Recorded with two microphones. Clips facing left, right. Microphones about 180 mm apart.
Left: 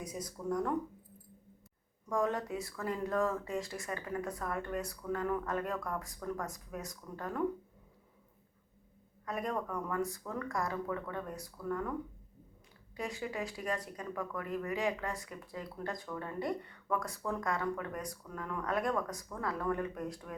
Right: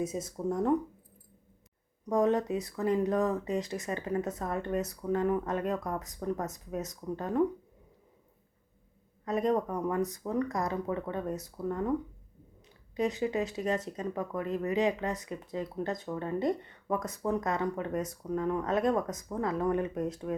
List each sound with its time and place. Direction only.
0.0 s speech: 25° right (ahead or behind)
2.0 s speech: 20° right (ahead or behind)
9.2 s speech: 20° right (ahead or behind)
13.0 s speech: 20° right (ahead or behind)